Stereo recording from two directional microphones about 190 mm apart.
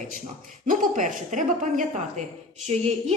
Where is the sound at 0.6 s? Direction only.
45° right (ahead or behind).